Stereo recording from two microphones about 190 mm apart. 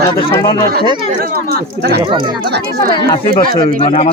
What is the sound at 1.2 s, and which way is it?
Speech, 55° right (ahead or behind).